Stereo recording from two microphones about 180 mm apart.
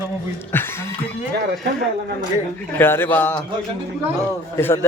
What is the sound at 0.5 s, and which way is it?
Speech, 10° left (ahead or behind).